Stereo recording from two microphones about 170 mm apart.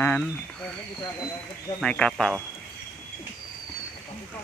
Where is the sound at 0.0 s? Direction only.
5° left (ahead or behind).